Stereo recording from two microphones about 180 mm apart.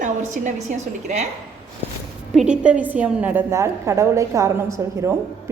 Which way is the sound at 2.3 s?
5° right (ahead or behind).